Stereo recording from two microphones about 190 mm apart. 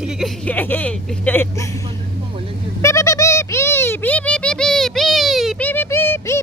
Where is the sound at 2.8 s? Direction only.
15° left (ahead or behind); by 5.7 s centre (ahead or behind).